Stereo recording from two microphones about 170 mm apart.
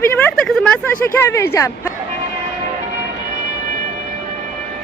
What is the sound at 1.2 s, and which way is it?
Speech, 15° left (ahead or behind).